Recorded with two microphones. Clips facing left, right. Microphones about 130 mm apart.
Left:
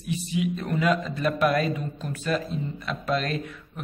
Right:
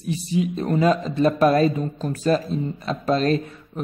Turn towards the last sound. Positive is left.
turn(degrees=-35)  # may be behind; listen again after turning